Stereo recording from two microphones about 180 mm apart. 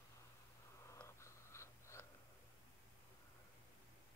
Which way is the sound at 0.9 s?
15° left (ahead or behind).